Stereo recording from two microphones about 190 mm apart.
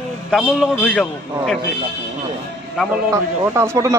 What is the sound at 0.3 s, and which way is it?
A man's voice, centre (ahead or behind).